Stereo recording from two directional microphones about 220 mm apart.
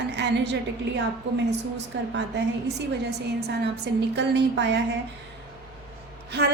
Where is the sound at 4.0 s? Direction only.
50° right (ahead or behind).